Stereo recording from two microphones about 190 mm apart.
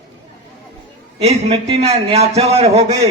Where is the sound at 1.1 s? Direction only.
35° right (ahead or behind).